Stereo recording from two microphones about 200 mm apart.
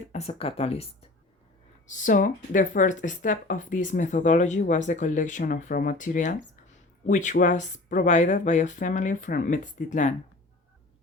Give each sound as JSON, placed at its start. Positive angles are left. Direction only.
{"t": 0.1, "sound": "speech", "side_deg": 30}
{"t": 1.9, "sound": "speech", "side_deg": 40}